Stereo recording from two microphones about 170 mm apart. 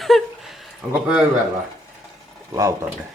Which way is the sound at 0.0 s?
Centre (ahead or behind).